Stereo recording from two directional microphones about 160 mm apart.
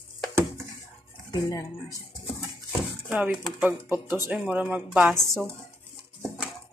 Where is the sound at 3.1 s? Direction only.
10° right (ahead or behind).